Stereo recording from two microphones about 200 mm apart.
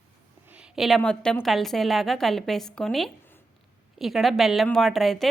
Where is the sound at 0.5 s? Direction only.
5° right (ahead or behind).